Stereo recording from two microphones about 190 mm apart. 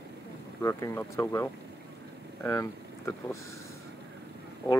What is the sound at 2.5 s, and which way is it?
Speech, 15° left (ahead or behind).